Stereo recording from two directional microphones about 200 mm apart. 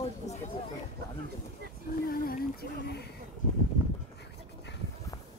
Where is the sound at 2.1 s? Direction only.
50° left (ahead or behind).